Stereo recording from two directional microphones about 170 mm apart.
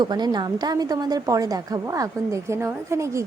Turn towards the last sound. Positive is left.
turn(degrees=-15)  # may be behind; listen again after turning